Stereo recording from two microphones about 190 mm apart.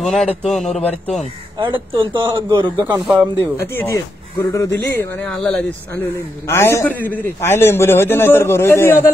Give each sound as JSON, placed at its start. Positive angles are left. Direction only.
{"t": 0.0, "sound": "speech", "side_deg": 0}
{"t": 1.6, "sound": "a man's voice", "side_deg": -25}
{"t": 3.7, "sound": "speech", "side_deg": 15}
{"t": 4.9, "sound": "speech", "side_deg": 5}
{"t": 6.5, "sound": "a man's voice", "side_deg": 15}